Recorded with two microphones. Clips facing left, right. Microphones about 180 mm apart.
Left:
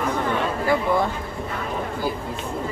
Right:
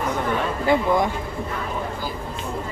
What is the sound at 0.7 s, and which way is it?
Speech, 15° right (ahead or behind).